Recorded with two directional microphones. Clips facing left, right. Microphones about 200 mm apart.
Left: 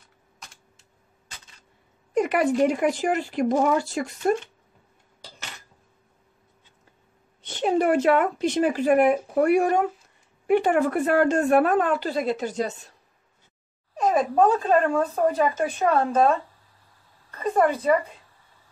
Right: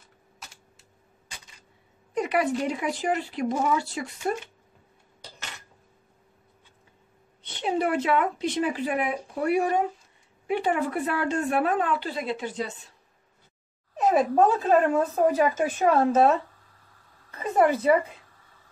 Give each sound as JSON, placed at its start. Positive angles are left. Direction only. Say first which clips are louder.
{"t": 2.1, "sound": "a sound", "louder": "left 3 dB", "side_deg": 50}
{"t": 2.6, "sound": "speech", "louder": "left 6 dB", "side_deg": 50}
{"t": 7.4, "sound": "speech", "louder": "left 5 dB", "side_deg": 45}
{"t": 13.9, "sound": "speech", "louder": "even", "side_deg": -5}
{"t": 17.4, "sound": "a woman's voice", "louder": "even", "side_deg": -10}